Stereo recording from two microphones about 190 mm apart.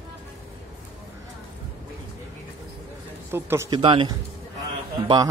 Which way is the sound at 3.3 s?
15° right (ahead or behind).